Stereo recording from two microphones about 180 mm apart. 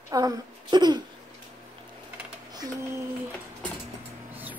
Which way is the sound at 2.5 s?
20° right (ahead or behind).